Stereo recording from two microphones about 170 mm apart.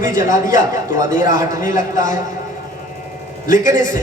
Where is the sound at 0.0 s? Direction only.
50° left (ahead or behind).